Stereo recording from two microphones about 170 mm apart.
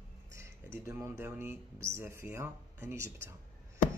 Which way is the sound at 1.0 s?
15° right (ahead or behind).